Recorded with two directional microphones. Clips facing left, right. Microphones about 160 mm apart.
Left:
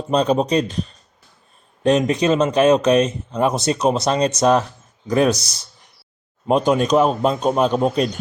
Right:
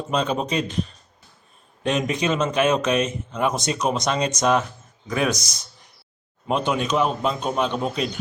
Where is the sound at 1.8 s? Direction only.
35° left (ahead or behind).